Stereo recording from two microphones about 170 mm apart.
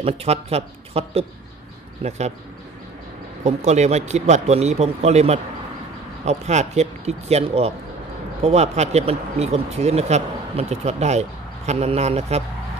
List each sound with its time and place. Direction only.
0.0 s speech: 35° right (ahead or behind)
3.4 s speech: 40° right (ahead or behind)